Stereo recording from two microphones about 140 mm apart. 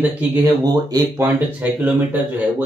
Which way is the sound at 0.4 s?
25° right (ahead or behind).